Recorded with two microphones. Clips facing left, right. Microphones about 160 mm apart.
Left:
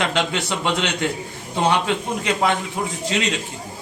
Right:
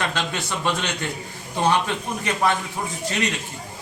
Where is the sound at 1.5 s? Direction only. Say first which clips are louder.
Left 2 dB; 15° left (ahead or behind).